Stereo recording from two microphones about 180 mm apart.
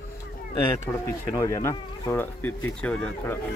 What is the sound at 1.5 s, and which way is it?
A man's voice, 15° left (ahead or behind).